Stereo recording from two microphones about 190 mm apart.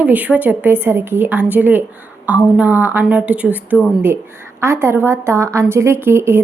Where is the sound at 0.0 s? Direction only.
10° right (ahead or behind).